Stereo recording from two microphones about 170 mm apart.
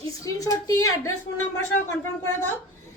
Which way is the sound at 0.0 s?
20° left (ahead or behind).